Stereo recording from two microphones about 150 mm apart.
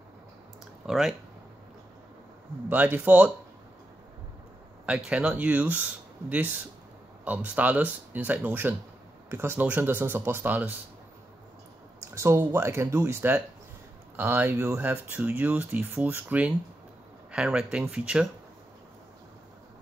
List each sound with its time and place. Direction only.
0.8 s speech: centre (ahead or behind)
2.7 s speech: 10° right (ahead or behind)
4.8 s speech: 5° right (ahead or behind)
12.0 s speech: 20° right (ahead or behind)